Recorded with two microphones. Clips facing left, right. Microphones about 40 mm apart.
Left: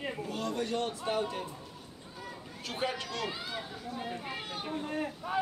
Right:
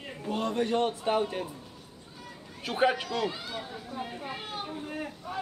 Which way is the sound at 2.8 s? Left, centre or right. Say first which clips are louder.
Right 9 dB; centre.